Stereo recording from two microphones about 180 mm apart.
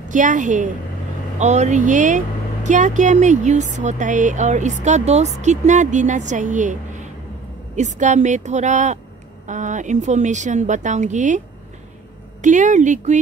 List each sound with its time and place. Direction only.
0.1 s a woman's voice: 45° right (ahead or behind)